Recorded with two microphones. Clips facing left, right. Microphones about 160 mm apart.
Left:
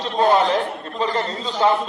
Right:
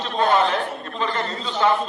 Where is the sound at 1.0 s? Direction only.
35° left (ahead or behind).